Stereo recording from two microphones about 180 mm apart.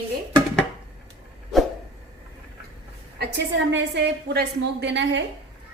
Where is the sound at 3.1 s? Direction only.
75° right (ahead or behind).